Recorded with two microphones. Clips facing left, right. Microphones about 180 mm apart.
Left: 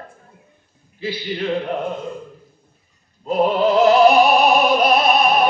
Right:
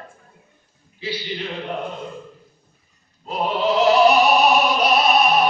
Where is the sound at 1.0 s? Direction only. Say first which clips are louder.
Left 2 dB; 50° left (ahead or behind).